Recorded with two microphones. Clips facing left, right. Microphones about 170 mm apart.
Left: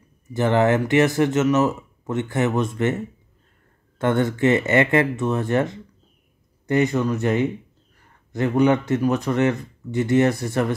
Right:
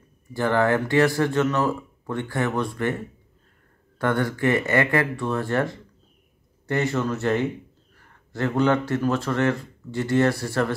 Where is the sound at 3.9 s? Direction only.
25° left (ahead or behind).